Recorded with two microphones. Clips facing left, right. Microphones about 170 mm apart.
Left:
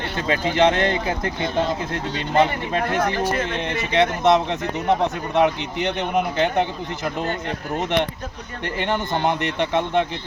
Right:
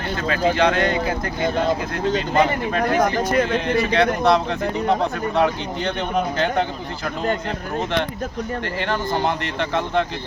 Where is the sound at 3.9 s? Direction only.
20° left (ahead or behind).